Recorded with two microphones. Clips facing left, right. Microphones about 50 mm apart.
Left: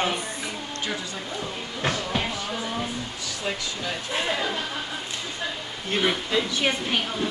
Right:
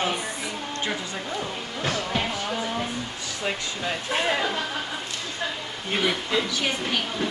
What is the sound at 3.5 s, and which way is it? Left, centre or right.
Speech, right.